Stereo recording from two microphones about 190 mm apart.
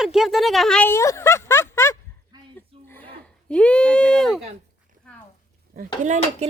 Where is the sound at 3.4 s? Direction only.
5° left (ahead or behind).